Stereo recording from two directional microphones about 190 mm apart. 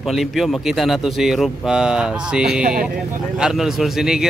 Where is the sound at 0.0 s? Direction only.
Centre (ahead or behind).